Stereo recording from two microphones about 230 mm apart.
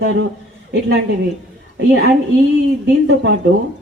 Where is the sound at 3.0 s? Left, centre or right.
Right.